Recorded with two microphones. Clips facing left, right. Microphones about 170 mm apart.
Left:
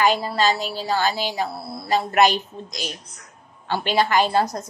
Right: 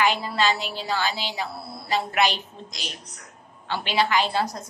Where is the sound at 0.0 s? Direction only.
40° left (ahead or behind).